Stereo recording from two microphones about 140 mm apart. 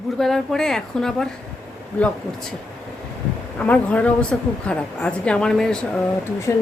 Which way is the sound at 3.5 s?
10° left (ahead or behind).